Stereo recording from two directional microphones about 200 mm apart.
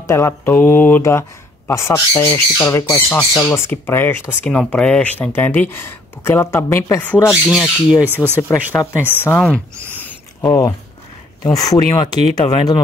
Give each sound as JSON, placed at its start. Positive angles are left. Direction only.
{"t": 0.0, "sound": "speech", "side_deg": 15}
{"t": 7.4, "sound": "speech", "side_deg": -5}
{"t": 8.5, "sound": "speech", "side_deg": 10}
{"t": 9.8, "sound": "a sound", "side_deg": -10}
{"t": 10.0, "sound": "a sound", "side_deg": 15}
{"t": 11.4, "sound": "speech", "side_deg": 15}